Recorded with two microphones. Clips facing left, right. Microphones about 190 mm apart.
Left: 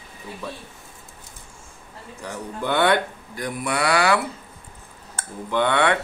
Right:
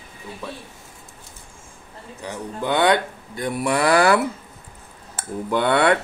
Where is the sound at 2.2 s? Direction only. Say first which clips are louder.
Right 1 dB; 15° right (ahead or behind).